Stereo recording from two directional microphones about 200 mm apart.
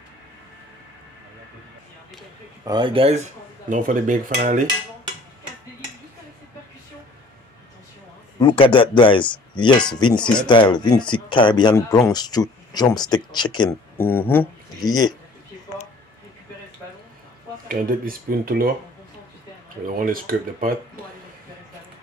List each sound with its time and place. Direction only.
2.6 s speech: 25° right (ahead or behind)
3.6 s cutlery: 40° right (ahead or behind)
8.4 s speech: 25° left (ahead or behind)
17.6 s speech: 45° right (ahead or behind)
19.9 s speech: 45° right (ahead or behind)